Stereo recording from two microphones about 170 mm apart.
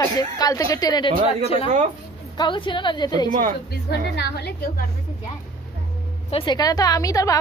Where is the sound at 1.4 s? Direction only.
35° left (ahead or behind).